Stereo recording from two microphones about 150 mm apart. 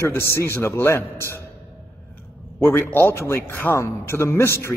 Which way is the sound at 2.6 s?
15° left (ahead or behind).